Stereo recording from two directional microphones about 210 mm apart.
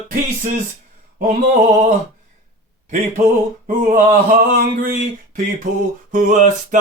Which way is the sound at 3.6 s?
40° right (ahead or behind).